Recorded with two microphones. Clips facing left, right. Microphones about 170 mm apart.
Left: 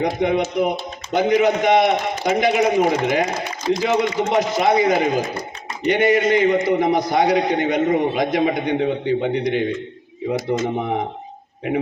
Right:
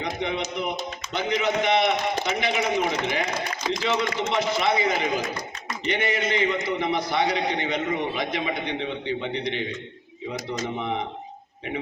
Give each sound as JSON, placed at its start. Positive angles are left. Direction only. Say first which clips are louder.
{"t": 0.0, "sound": "a man's voice", "louder": "left 9 dB", "side_deg": 45}